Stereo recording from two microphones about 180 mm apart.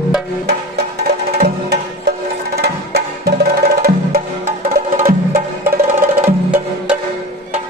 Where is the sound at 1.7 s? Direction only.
65° right (ahead or behind).